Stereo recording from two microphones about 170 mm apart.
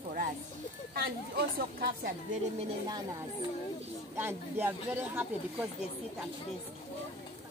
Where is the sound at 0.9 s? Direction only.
65° right (ahead or behind).